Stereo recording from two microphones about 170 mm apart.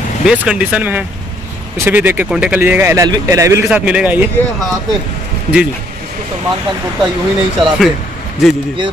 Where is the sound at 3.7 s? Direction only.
5° right (ahead or behind).